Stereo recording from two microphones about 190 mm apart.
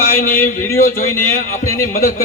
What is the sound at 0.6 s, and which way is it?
Speech, 15° left (ahead or behind).